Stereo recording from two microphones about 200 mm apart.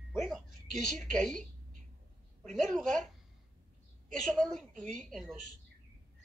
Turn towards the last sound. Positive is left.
turn(degrees=0)  # may be behind; listen again after turning